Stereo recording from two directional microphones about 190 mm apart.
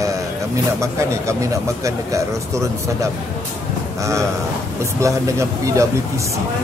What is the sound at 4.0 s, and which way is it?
Speech, 15° right (ahead or behind).